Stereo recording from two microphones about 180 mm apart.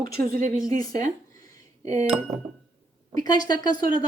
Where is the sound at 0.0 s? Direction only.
50° right (ahead or behind).